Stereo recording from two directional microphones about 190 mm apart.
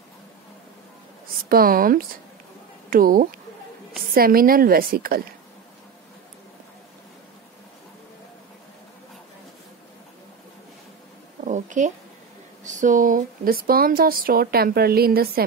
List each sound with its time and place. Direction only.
1.2 s speech: 50° right (ahead or behind)
11.4 s a sound: 40° right (ahead or behind)
12.6 s speech: 40° right (ahead or behind)